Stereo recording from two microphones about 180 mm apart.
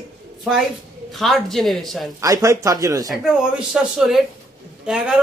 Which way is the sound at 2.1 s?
20° right (ahead or behind).